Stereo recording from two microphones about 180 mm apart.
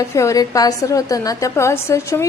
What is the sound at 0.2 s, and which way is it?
A woman's voice, 20° left (ahead or behind).